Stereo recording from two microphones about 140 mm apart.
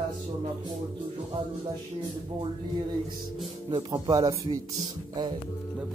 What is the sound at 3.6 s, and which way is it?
Speech, 35° right (ahead or behind).